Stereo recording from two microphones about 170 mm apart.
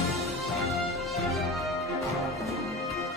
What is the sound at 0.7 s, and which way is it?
Music, centre (ahead or behind).